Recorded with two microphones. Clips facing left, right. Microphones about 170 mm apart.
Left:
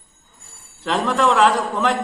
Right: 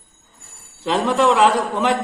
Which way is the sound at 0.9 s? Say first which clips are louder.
Right 2 dB; centre (ahead or behind).